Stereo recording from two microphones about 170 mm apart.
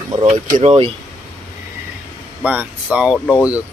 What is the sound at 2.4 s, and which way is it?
Speech, 10° right (ahead or behind).